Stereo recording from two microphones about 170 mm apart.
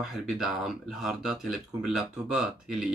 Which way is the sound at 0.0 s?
Centre (ahead or behind).